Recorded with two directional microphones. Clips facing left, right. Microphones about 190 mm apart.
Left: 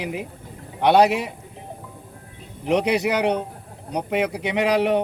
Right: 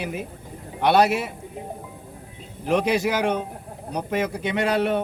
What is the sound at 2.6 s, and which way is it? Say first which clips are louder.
Speech: left 1 dB; 15° left (ahead or behind).